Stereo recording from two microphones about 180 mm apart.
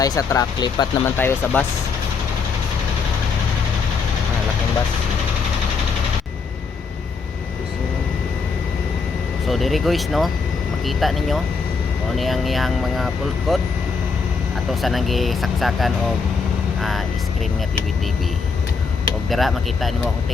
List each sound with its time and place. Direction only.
0.0 s speech: 20° left (ahead or behind)
9.5 s speech: centre (ahead or behind)
14.7 s speech: centre (ahead or behind)
19.3 s speech: centre (ahead or behind)